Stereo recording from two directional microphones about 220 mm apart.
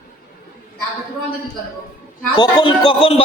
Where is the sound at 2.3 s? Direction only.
20° left (ahead or behind).